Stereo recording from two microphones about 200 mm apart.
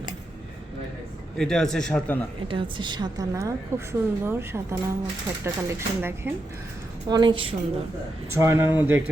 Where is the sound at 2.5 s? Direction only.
25° right (ahead or behind).